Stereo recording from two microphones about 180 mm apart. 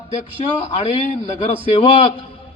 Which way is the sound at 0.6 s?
35° left (ahead or behind).